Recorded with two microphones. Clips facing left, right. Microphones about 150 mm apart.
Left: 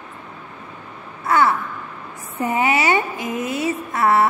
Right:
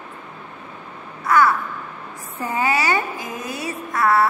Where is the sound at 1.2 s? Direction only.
25° left (ahead or behind).